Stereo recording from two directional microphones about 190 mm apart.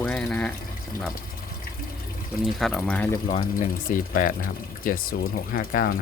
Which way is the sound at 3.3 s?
30° left (ahead or behind).